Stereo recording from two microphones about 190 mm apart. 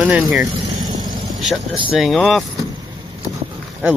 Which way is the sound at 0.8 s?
20° right (ahead or behind).